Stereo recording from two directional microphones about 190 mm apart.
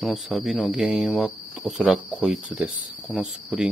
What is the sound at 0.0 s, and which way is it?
Speech, centre (ahead or behind).